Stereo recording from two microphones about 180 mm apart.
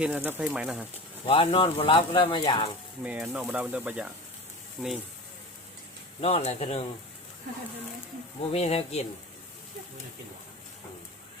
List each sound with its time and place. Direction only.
0.0 s speech: 5° right (ahead or behind)
1.3 s speech: 30° left (ahead or behind)
3.0 s speech: 5° right (ahead or behind)
6.2 s speech: 35° left (ahead or behind)
8.5 s speech: 35° left (ahead or behind)